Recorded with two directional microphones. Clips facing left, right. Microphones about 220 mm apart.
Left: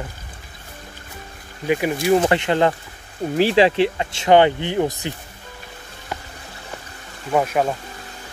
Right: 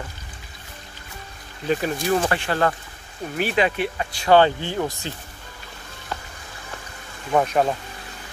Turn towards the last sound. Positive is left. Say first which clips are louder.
# even
turn(degrees=5)  # may be behind; listen again after turning